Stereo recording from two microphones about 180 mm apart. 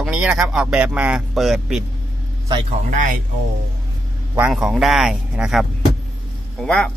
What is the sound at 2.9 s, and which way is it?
Speech, 45° right (ahead or behind).